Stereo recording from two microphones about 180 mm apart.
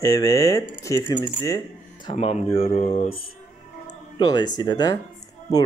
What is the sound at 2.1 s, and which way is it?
Speech, 35° left (ahead or behind).